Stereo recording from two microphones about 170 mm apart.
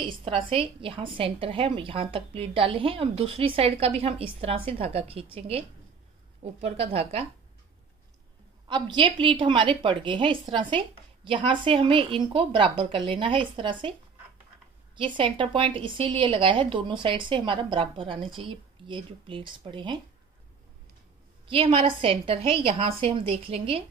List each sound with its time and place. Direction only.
0.0 s a woman's voice: 30° right (ahead or behind)
8.6 s a woman's voice: 30° right (ahead or behind)
15.0 s a woman's voice: 30° right (ahead or behind)
21.5 s a woman's voice: 30° right (ahead or behind)